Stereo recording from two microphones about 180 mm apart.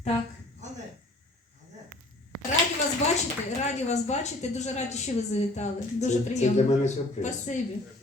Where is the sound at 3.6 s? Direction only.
40° left (ahead or behind).